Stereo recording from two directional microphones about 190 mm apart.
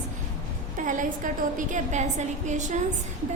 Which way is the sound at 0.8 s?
45° right (ahead or behind).